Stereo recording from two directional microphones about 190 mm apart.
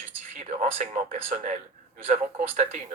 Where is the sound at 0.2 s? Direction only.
40° right (ahead or behind).